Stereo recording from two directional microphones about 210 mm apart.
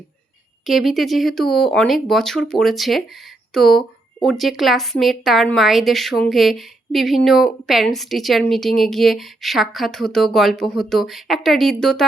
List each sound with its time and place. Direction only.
0.6 s a woman's voice: centre (ahead or behind)